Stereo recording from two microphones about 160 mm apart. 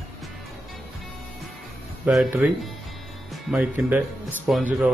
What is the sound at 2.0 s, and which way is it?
Speech, 5° right (ahead or behind).